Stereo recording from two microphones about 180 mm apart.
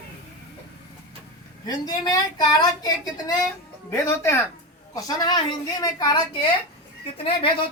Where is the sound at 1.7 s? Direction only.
25° left (ahead or behind).